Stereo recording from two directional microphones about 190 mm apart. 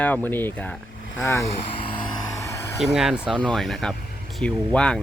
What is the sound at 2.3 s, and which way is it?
Vehicle, 15° left (ahead or behind).